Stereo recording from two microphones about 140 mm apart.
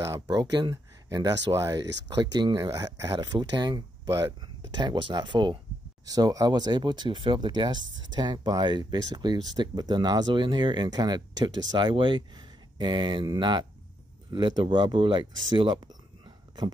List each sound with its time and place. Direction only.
0.0 s speech: 25° right (ahead or behind)